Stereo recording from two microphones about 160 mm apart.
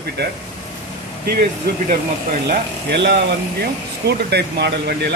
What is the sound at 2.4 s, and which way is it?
Speech, 90° right.